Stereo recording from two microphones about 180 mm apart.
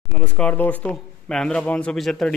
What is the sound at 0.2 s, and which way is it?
Speech, 5° left (ahead or behind).